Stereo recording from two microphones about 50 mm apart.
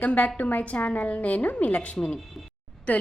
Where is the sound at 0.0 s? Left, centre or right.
Left.